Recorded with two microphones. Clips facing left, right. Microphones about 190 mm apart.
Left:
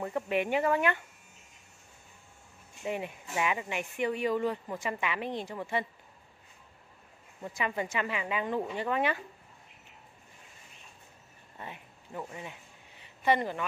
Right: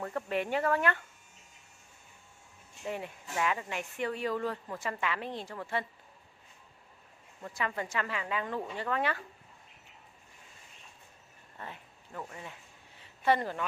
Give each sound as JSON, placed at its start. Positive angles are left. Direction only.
{"t": 0.0, "sound": "speech", "side_deg": 15}
{"t": 2.8, "sound": "speech", "side_deg": 15}
{"t": 7.4, "sound": "speech", "side_deg": 15}
{"t": 11.5, "sound": "speech", "side_deg": 15}